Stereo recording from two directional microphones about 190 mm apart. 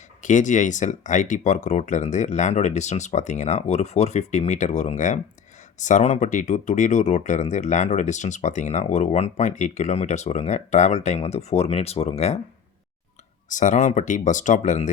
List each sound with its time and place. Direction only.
0.2 s speech: 40° left (ahead or behind)
13.5 s speech: 40° left (ahead or behind)